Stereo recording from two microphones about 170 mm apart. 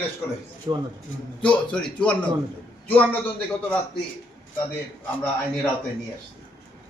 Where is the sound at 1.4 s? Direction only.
5° left (ahead or behind).